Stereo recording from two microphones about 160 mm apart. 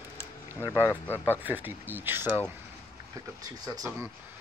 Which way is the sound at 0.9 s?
15° left (ahead or behind).